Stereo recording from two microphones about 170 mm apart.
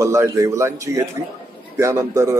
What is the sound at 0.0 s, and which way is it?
A man's voice, 15° right (ahead or behind).